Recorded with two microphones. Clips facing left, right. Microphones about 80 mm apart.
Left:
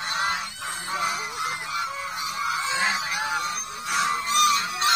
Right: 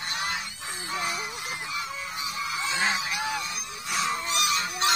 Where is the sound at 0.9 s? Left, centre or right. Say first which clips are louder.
Left 3 dB; left.